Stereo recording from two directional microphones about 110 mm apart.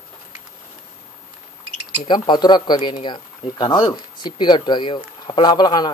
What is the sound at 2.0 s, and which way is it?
Speech, 45° left (ahead or behind).